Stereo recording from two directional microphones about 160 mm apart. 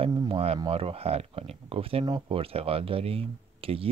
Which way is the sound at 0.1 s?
25° right (ahead or behind).